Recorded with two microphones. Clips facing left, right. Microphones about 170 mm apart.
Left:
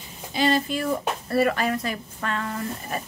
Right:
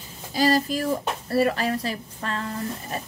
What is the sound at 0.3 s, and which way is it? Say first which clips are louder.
Speech: right 1 dB; 40° right (ahead or behind).